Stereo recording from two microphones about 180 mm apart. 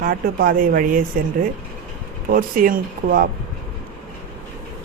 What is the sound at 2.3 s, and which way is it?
Speech, 50° right (ahead or behind).